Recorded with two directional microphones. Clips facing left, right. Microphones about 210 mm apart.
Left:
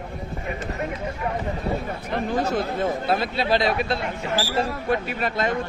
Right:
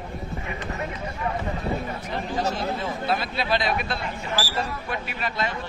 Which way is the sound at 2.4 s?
55° left (ahead or behind).